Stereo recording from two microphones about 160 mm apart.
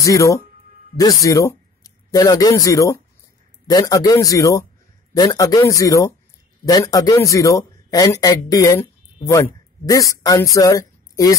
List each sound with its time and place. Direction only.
0.0 s a man's voice: 20° left (ahead or behind)